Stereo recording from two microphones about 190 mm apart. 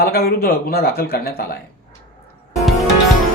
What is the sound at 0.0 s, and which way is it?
Speech, 55° left (ahead or behind).